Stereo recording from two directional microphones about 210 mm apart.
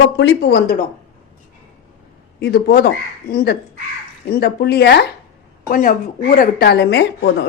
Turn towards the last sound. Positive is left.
turn(degrees=55)  # may be behind; listen again after turning